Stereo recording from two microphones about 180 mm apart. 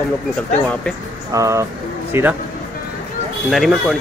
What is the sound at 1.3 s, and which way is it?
Speech, 15° right (ahead or behind).